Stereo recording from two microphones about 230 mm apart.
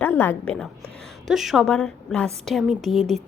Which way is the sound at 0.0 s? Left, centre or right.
Centre.